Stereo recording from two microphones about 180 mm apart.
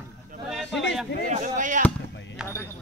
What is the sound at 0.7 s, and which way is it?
Speech, 80° left.